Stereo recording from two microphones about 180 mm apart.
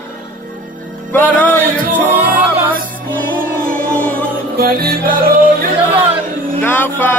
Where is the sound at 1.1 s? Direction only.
10° left (ahead or behind).